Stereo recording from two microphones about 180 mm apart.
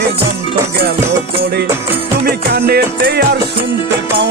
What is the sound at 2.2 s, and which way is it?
Music, 60° right (ahead or behind).